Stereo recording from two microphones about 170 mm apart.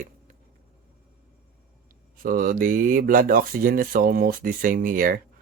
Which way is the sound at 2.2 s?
55° right (ahead or behind).